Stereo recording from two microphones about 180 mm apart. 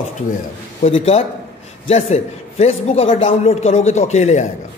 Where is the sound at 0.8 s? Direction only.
35° left (ahead or behind).